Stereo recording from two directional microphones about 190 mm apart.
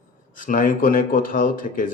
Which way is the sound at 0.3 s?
45° left (ahead or behind).